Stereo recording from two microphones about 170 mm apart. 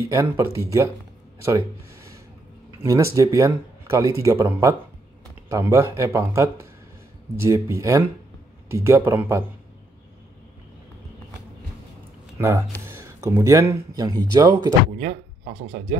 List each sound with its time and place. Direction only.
0.0 s speech: 15° right (ahead or behind)
1.4 s a sound: 15° right (ahead or behind)
2.8 s speech: 15° right (ahead or behind)
12.4 s speech: 15° right (ahead or behind)
15.0 s speech: 45° right (ahead or behind)